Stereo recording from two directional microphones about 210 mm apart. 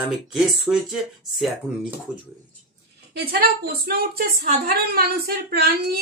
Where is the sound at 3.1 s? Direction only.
45° right (ahead or behind).